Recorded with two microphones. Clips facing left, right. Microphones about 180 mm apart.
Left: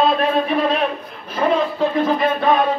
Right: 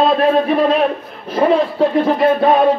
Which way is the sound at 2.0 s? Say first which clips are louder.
Right 5 dB; 30° right (ahead or behind).